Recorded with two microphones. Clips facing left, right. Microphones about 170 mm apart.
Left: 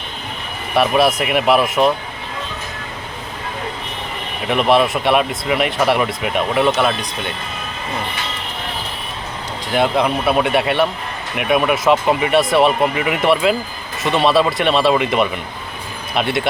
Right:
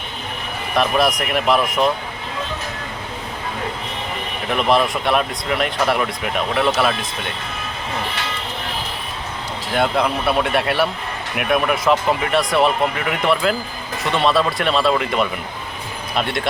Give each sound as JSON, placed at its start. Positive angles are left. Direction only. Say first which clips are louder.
{"t": 0.8, "sound": "speech", "louder": "left 3 dB", "side_deg": 5}
{"t": 4.4, "sound": "speech", "louder": "left 3 dB", "side_deg": 5}
{"t": 9.7, "sound": "speech", "louder": "left 2 dB", "side_deg": 0}